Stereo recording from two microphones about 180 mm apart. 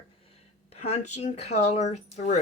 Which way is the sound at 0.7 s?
40° left (ahead or behind).